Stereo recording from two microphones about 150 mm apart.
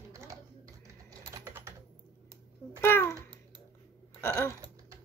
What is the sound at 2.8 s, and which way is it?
Babbling, 15° left (ahead or behind).